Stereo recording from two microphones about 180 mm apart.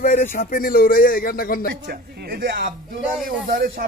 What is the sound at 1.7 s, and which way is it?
A man's voice, 60° right (ahead or behind).